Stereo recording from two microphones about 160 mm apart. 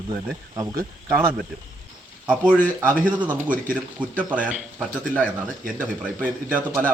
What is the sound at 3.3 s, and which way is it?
Speech, 55° right (ahead or behind).